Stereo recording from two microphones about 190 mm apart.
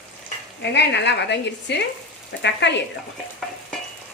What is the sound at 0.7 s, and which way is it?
A woman's voice, 65° left (ahead or behind).